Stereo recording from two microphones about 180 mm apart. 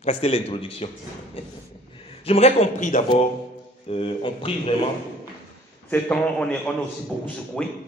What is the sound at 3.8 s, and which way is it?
Speech, 30° left (ahead or behind).